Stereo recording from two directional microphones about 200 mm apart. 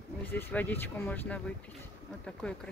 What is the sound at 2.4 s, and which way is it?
Speech, 5° left (ahead or behind).